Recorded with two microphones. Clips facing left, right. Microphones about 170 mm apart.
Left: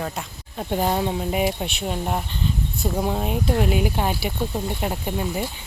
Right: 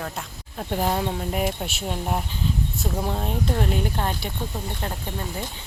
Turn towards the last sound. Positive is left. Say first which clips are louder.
# left 6 dB
turn(degrees=10)  # may be behind; listen again after turning